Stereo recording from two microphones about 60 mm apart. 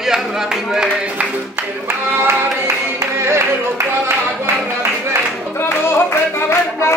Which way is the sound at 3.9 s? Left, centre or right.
Right.